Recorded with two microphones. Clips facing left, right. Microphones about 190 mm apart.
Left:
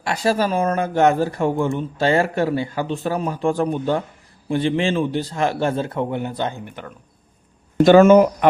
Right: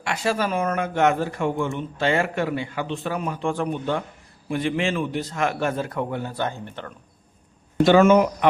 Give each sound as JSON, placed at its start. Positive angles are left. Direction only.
{"t": 0.0, "sound": "a man's voice", "side_deg": 35}
{"t": 7.9, "sound": "a man's voice", "side_deg": 40}